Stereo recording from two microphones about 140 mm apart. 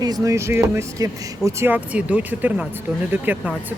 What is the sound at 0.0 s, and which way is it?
Speech, 25° right (ahead or behind).